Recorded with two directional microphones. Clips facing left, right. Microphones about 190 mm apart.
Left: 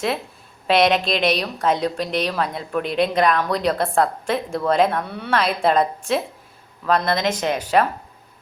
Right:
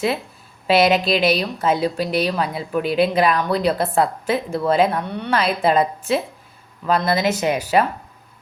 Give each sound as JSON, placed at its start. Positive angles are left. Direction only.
{"t": 0.7, "sound": "a woman's voice", "side_deg": -5}